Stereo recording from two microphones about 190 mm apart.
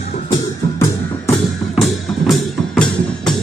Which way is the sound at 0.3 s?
15° left (ahead or behind).